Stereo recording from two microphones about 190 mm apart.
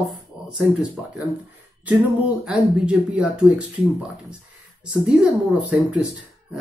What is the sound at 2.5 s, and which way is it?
Speech, 5° right (ahead or behind).